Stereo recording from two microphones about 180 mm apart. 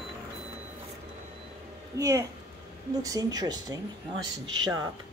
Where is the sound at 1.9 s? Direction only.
15° right (ahead or behind).